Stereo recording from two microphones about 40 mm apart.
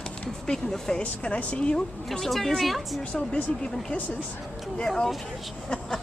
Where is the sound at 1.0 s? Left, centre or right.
Left.